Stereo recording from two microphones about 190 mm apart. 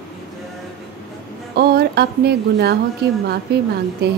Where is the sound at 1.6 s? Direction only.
55° right (ahead or behind).